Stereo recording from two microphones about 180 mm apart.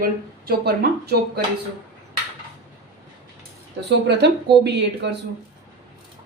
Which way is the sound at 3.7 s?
70° right (ahead or behind).